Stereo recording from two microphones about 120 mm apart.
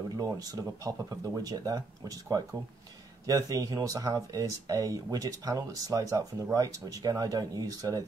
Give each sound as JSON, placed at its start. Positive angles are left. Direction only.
{"t": 0.2, "sound": "speech", "side_deg": -30}